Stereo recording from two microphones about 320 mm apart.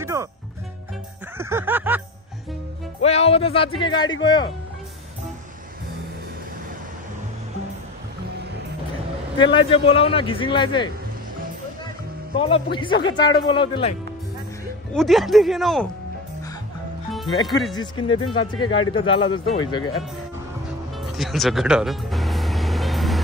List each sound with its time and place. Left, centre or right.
0.0 s music: centre
1.4 s a sound: centre
3.0 s speech: centre
9.4 s speech: centre
12.4 s speech: centre
15.0 s speech: centre
18.0 s speech: centre
18.7 s speech: left
19.0 s speech: centre
21.0 s music: centre